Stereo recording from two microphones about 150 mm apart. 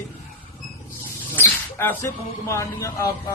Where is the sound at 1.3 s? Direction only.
15° left (ahead or behind).